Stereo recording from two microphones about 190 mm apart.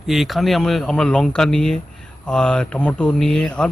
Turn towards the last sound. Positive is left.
turn(degrees=5)  # may be behind; listen again after turning